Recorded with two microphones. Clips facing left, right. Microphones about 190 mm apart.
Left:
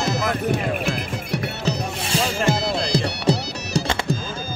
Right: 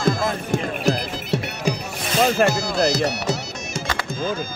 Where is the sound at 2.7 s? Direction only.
30° left (ahead or behind).